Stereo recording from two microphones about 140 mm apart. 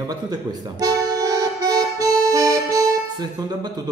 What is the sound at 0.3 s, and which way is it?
Accordion, 25° right (ahead or behind).